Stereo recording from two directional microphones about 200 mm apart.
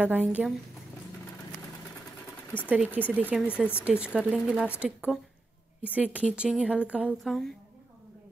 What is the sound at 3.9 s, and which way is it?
A woman's voice, 5° right (ahead or behind).